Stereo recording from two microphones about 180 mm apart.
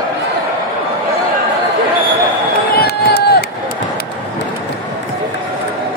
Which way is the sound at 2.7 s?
60° left (ahead or behind).